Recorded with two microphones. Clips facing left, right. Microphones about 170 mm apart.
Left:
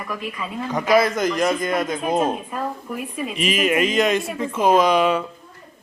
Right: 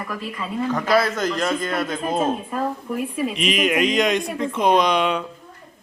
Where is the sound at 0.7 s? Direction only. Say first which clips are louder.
Left 3 dB; 15° left (ahead or behind).